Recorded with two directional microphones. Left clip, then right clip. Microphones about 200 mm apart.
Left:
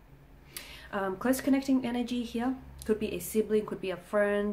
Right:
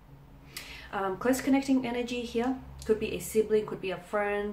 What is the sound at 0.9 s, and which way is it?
Speech, 35° left (ahead or behind).